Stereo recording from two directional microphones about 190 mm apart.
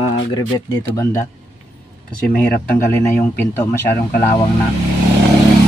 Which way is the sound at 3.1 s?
10° left (ahead or behind).